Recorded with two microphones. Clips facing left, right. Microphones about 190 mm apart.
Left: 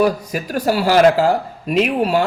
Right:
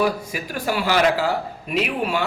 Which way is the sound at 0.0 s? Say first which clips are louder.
Left 5 dB; 45° left (ahead or behind).